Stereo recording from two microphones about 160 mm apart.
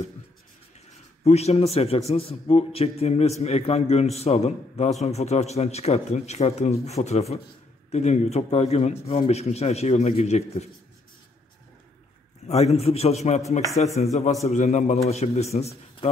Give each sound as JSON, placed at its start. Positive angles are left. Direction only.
{"t": 1.2, "sound": "a man's voice", "side_deg": 40}
{"t": 12.4, "sound": "a man's voice", "side_deg": 40}